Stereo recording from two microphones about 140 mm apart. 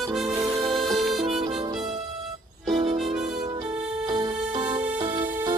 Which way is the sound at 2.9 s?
Centre (ahead or behind).